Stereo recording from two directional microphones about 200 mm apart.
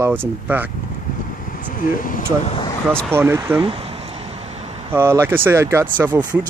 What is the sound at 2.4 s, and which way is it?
Speech, 30° left (ahead or behind).